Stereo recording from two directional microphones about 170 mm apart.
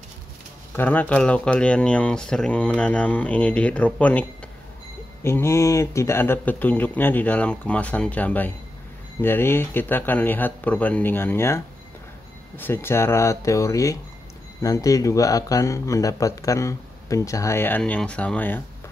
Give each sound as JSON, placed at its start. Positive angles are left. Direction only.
{"t": 0.7, "sound": "speech", "side_deg": 10}